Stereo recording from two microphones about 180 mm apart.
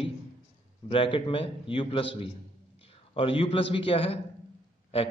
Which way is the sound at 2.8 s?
30° left (ahead or behind).